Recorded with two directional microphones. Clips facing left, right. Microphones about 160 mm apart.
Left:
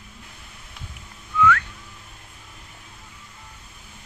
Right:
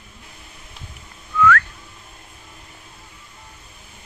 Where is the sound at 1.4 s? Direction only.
15° left (ahead or behind).